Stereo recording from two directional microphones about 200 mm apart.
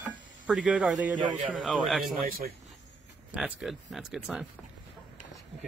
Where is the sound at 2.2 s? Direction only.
45° right (ahead or behind).